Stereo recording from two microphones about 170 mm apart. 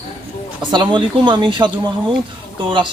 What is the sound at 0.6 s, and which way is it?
A man's voice, 30° right (ahead or behind).